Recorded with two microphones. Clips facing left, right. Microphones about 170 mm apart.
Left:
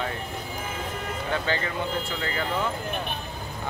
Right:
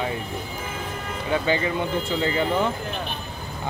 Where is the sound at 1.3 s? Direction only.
15° right (ahead or behind).